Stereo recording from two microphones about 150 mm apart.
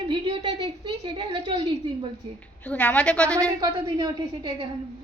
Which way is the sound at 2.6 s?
10° left (ahead or behind).